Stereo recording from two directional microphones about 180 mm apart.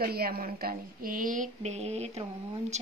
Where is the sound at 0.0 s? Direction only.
60° right (ahead or behind).